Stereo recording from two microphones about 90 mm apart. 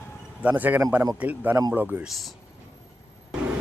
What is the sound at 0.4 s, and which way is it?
Speech, 15° right (ahead or behind).